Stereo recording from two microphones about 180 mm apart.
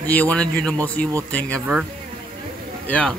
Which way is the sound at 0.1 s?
10° left (ahead or behind).